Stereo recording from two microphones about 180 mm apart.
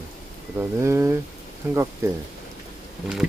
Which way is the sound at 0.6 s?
15° right (ahead or behind).